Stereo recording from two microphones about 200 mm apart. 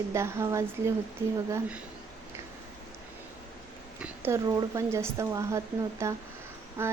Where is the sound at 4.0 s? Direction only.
15° right (ahead or behind).